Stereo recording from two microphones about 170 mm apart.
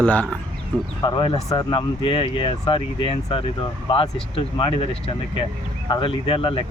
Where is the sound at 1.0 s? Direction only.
30° left (ahead or behind).